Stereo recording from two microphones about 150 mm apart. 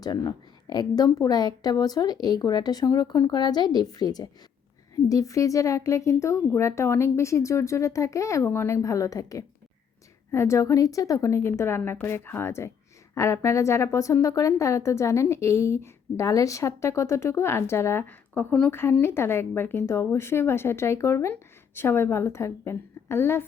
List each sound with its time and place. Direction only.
0.0 s a woman's voice: 25° left (ahead or behind)